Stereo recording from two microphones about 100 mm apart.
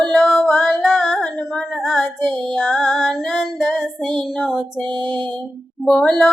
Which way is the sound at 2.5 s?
5° left (ahead or behind).